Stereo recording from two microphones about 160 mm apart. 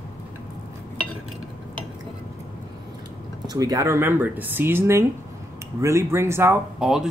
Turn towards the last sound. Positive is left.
turn(degrees=-5)  # may be behind; listen again after turning